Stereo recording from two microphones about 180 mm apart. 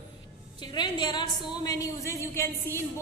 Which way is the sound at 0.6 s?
25° left (ahead or behind).